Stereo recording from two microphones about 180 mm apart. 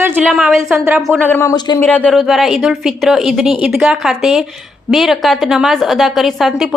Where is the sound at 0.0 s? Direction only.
10° right (ahead or behind).